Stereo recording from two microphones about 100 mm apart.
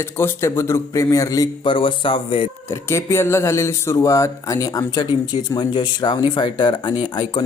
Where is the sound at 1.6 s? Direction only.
55° left (ahead or behind).